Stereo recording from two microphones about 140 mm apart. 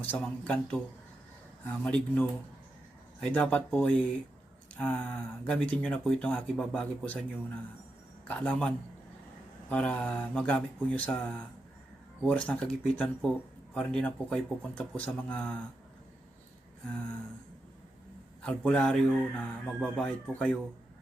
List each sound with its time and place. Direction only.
0.0 s speech: 10° left (ahead or behind)
1.8 s speech: 10° left (ahead or behind)
18.4 s speech: 5° left (ahead or behind)